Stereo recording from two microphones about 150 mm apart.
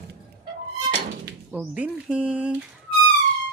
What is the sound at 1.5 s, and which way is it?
Speech, 10° right (ahead or behind).